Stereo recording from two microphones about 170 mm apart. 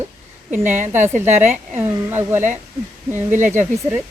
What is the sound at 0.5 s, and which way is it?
A woman's voice, 10° right (ahead or behind).